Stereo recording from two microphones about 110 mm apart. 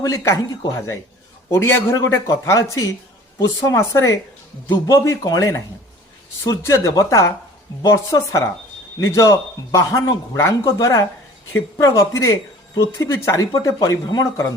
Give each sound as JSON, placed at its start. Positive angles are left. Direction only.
{"t": 0.0, "sound": "a man's voice", "side_deg": 30}